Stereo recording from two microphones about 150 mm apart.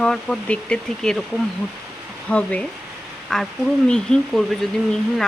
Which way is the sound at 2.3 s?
10° left (ahead or behind).